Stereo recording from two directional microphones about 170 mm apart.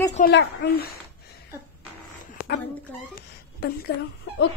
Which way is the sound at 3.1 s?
65° left (ahead or behind).